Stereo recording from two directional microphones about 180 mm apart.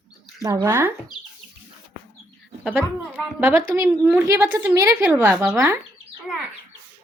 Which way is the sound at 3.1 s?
10° right (ahead or behind).